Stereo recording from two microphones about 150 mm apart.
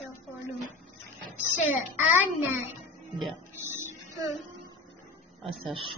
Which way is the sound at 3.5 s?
15° right (ahead or behind).